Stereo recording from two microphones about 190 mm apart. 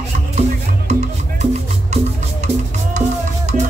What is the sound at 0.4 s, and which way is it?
Music, 35° right (ahead or behind).